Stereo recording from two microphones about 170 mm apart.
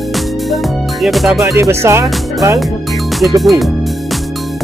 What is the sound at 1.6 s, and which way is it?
Speech, 15° right (ahead or behind).